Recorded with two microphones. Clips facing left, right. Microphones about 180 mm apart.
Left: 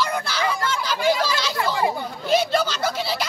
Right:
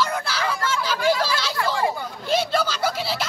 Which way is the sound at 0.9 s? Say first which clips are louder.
Left 1 dB; 20° left (ahead or behind).